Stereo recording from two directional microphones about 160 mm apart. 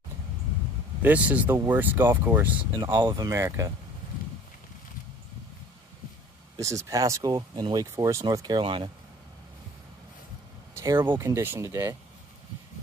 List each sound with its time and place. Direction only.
1.0 s speech: 10° right (ahead or behind)
2.9 s speech: 25° right (ahead or behind)
6.5 s speech: 20° right (ahead or behind)
10.7 s a sound: 15° right (ahead or behind)
11.1 s speech: 15° right (ahead or behind)